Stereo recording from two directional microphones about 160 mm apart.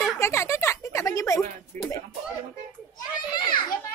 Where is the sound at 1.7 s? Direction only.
55° right (ahead or behind).